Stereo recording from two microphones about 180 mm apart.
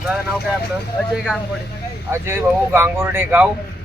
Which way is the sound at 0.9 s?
Centre (ahead or behind).